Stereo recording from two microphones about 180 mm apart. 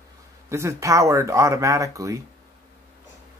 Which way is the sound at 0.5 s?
15° right (ahead or behind).